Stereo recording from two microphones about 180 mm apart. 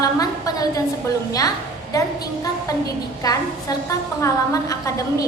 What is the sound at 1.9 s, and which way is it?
A woman's voice, 20° left (ahead or behind).